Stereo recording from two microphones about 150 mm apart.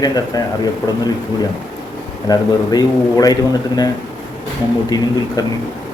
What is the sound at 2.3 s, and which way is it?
A man's voice, 25° left (ahead or behind).